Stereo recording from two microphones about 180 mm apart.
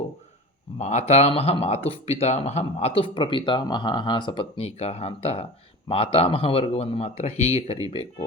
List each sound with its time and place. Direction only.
0.8 s speech: 40° left (ahead or behind)